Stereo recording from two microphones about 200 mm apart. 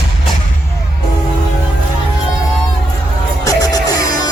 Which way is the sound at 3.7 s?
20° left (ahead or behind).